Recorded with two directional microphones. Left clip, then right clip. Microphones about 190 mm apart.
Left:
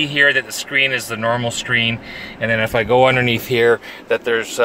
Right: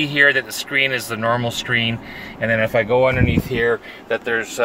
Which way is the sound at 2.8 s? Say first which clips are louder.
Left 3 dB; 40° left (ahead or behind).